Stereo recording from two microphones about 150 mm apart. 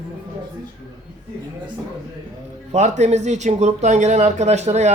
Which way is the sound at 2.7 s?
50° right (ahead or behind).